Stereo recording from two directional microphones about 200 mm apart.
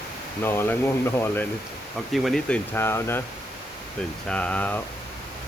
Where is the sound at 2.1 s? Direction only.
Centre (ahead or behind).